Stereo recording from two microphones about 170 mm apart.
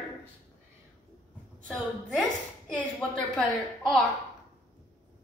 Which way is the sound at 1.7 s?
Centre (ahead or behind).